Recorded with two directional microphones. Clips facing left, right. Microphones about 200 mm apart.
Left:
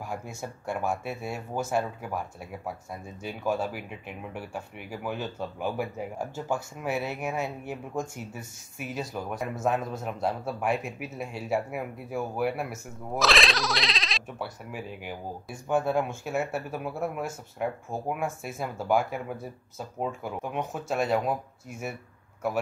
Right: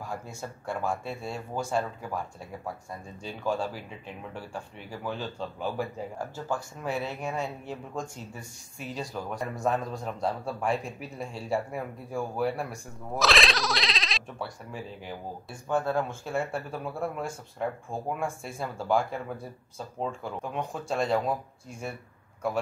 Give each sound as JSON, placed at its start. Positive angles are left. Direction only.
{"t": 0.1, "sound": "speech", "side_deg": 10}